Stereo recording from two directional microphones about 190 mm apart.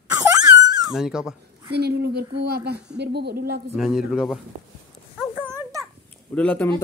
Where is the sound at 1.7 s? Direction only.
60° right (ahead or behind).